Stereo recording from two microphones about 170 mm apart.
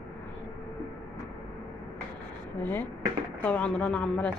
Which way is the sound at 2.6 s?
10° left (ahead or behind).